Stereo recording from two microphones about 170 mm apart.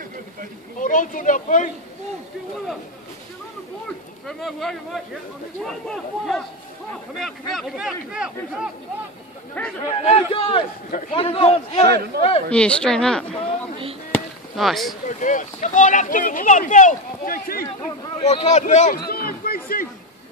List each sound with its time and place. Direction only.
0.7 s speech: 50° left (ahead or behind)
4.3 s speech: centre (ahead or behind)
9.6 s speech: 10° left (ahead or behind)
9.9 s a man's voice: 35° left (ahead or behind)
10.9 s speech: 50° left (ahead or behind)
11.1 s a man's voice: 35° left (ahead or behind)
12.4 s speech: 5° left (ahead or behind)
15.0 s speech: 50° left (ahead or behind)
18.2 s speech: 40° left (ahead or behind)
18.9 s a sound: 65° left (ahead or behind)